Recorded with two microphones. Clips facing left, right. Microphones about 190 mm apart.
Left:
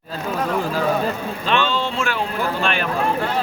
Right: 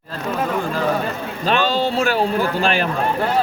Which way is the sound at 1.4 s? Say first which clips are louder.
Right 3 dB; 40° right (ahead or behind).